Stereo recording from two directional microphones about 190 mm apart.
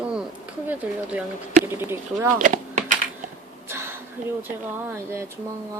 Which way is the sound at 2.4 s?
45° right (ahead or behind).